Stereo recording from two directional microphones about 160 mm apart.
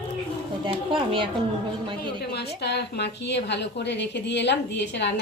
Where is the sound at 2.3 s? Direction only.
90° left.